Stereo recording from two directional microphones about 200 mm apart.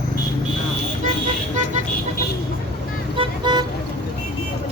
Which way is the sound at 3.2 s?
20° right (ahead or behind).